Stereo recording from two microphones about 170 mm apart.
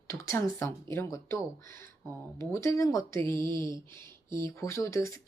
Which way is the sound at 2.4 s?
15° left (ahead or behind).